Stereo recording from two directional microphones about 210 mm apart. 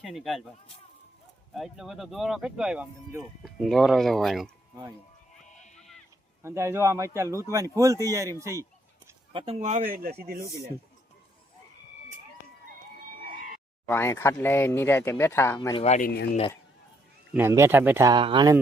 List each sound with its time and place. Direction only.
0.0 s speech: centre (ahead or behind)
1.5 s speech: centre (ahead or behind)
5.7 s a sound: centre (ahead or behind)
6.4 s speech: 10° right (ahead or behind)
9.3 s speech: 30° right (ahead or behind); by 10.7 s 45° right (ahead or behind)
13.2 s a sound: 40° right (ahead or behind)
13.8 s speech: 10° left (ahead or behind)
15.8 s speech: 35° left (ahead or behind)
17.3 s speech: 10° right (ahead or behind)